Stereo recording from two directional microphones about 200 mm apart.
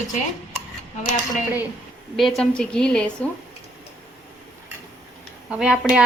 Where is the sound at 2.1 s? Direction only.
Centre (ahead or behind).